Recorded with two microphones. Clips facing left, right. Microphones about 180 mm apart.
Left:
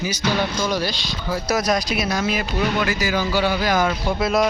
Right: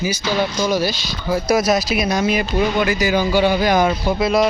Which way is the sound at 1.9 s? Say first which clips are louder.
Right 4 dB; 20° right (ahead or behind).